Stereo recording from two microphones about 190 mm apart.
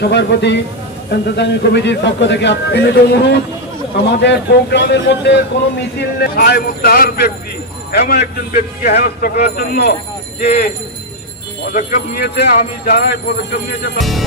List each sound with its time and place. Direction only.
0.0 s a man's voice: 65° left (ahead or behind)
5.9 s a man's voice: 55° left (ahead or behind)
11.7 s speech: 50° left (ahead or behind)